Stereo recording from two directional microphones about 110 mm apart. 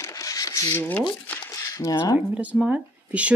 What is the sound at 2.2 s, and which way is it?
Speech, 15° right (ahead or behind).